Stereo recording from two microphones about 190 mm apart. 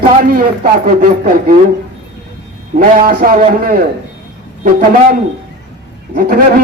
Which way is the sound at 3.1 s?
50° right (ahead or behind).